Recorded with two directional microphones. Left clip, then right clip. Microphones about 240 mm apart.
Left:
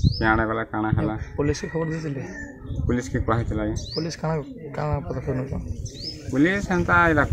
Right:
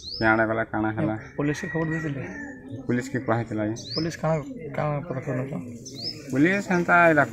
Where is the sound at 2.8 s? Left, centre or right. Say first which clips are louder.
Left 1 dB; centre.